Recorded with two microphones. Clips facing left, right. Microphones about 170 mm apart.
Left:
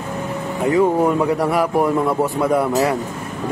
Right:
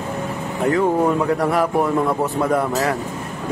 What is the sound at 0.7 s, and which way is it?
Speech, 5° left (ahead or behind).